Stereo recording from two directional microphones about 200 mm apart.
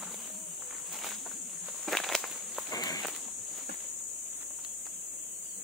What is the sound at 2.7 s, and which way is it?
Walk, 20° left (ahead or behind).